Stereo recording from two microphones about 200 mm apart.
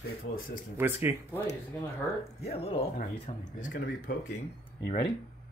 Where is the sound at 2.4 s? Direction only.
30° left (ahead or behind).